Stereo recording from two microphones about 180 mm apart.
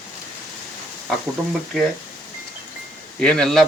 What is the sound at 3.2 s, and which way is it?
Speech, 5° left (ahead or behind).